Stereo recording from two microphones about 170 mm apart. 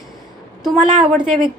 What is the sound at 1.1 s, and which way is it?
Speech, centre (ahead or behind).